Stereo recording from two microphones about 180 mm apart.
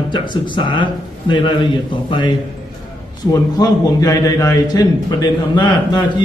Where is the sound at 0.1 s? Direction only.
25° left (ahead or behind).